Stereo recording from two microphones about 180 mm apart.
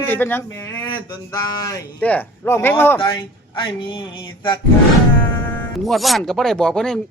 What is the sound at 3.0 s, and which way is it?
Speech, 25° left (ahead or behind).